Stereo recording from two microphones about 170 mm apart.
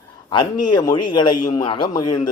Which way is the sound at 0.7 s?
25° left (ahead or behind).